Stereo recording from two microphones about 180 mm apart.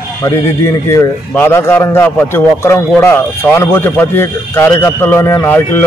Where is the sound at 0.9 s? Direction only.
15° left (ahead or behind).